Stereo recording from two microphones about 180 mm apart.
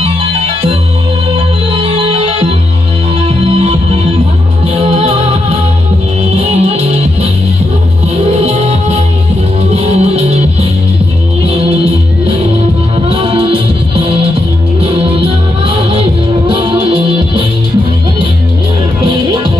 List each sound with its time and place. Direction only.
1.7 s music: 30° right (ahead or behind)
4.9 s music: 35° right (ahead or behind)
8.5 s music: 35° right (ahead or behind)
11.4 s music: 35° right (ahead or behind)
19.0 s music: 25° right (ahead or behind)